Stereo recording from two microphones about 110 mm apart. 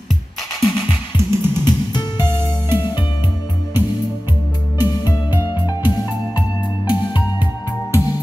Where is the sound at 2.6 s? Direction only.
20° right (ahead or behind).